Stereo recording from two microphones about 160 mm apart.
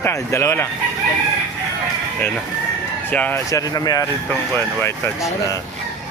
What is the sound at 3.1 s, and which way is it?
Speech, 10° left (ahead or behind).